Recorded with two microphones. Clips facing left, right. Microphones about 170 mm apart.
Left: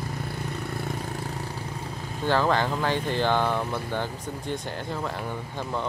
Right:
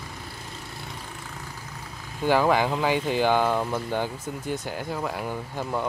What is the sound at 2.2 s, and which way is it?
Speech, 10° right (ahead or behind).